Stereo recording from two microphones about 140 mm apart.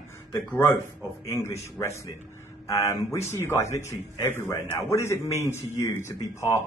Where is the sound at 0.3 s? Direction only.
20° left (ahead or behind).